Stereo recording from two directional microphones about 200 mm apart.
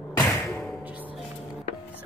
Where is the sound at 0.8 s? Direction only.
10° right (ahead or behind).